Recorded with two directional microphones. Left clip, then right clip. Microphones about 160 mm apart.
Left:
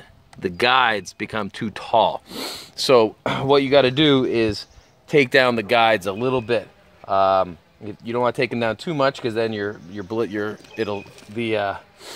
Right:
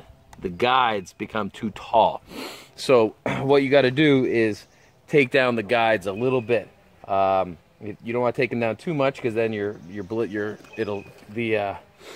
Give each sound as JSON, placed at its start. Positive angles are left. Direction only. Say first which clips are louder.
{"t": 0.4, "sound": "speech", "louder": "left 3 dB", "side_deg": 35}
{"t": 2.2, "sound": "speech", "louder": "left 5 dB", "side_deg": 10}
{"t": 5.3, "sound": "speech", "louder": "left 4 dB", "side_deg": 10}